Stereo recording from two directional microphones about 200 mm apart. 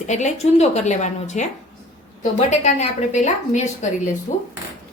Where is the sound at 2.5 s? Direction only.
35° left (ahead or behind).